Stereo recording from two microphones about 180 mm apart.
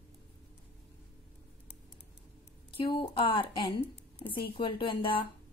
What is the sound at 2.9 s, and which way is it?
A woman's voice, 30° left (ahead or behind).